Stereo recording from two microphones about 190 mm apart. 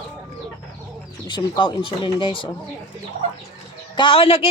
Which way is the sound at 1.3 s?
25° left (ahead or behind).